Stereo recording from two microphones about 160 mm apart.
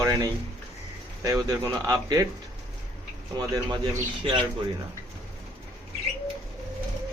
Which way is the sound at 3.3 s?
25° right (ahead or behind).